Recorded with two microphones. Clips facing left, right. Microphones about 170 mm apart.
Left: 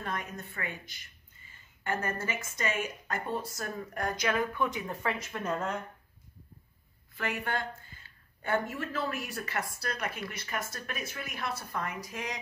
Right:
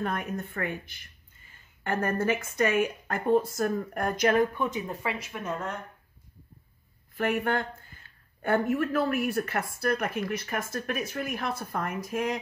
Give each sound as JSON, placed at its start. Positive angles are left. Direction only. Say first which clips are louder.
{"t": 0.0, "sound": "speech", "louder": "right 6 dB", "side_deg": -55}
{"t": 4.7, "sound": "speech", "louder": "right 2 dB", "side_deg": -15}
{"t": 7.2, "sound": "speech", "louder": "right 7 dB", "side_deg": -55}